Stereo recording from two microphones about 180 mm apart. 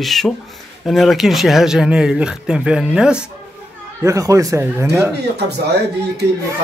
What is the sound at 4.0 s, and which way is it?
Speech, 15° right (ahead or behind).